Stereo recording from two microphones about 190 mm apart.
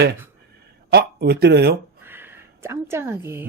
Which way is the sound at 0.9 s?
55° right (ahead or behind).